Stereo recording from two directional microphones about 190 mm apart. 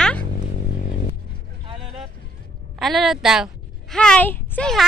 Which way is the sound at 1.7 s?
30° right (ahead or behind).